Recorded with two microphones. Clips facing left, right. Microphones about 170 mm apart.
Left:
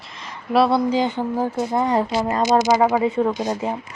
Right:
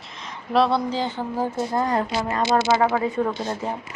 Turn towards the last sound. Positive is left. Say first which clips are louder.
# left 4 dB
turn(degrees=15)  # may be behind; listen again after turning